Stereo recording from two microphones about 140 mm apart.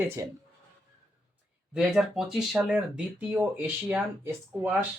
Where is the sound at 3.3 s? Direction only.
15° right (ahead or behind).